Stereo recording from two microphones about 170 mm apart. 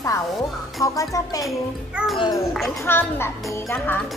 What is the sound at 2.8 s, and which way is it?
A child's voice, 15° left (ahead or behind).